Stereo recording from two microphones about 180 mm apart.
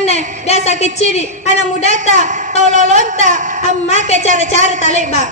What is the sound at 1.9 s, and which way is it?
A woman's voice, 45° right (ahead or behind).